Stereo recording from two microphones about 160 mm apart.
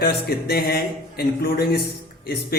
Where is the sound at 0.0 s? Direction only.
75° left (ahead or behind).